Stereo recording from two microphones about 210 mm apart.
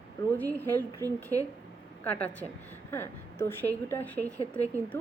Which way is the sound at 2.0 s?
5° left (ahead or behind).